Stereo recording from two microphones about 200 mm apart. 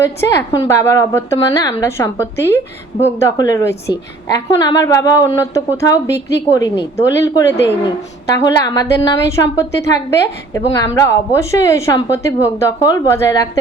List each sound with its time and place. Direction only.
0.0 s a woman's voice: 15° left (ahead or behind)